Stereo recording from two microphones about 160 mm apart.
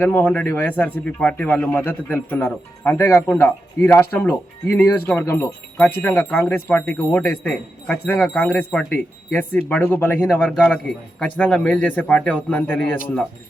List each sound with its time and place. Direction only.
0.0 s a man's voice: 10° left (ahead or behind)